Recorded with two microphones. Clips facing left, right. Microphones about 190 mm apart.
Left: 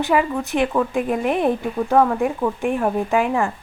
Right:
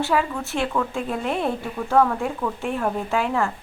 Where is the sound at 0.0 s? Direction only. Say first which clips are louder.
Left 4 dB; 15° left (ahead or behind).